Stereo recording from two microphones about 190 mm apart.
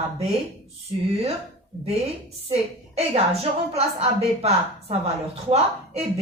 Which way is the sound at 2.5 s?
35° right (ahead or behind).